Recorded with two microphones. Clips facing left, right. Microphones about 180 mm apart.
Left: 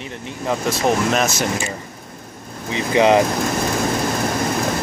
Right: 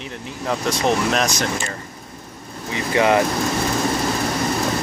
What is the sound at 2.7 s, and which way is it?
Speech, 20° left (ahead or behind).